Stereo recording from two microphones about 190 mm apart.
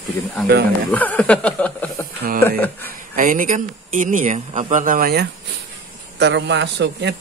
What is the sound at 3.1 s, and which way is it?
A man's voice, 45° right (ahead or behind).